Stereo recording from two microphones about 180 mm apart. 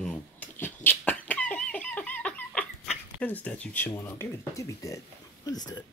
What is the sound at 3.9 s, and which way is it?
Speech, 15° left (ahead or behind).